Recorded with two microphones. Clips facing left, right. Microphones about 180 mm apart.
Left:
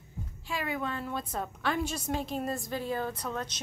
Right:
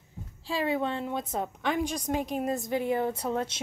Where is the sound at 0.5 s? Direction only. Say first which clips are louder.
Right 6 dB; 30° right (ahead or behind).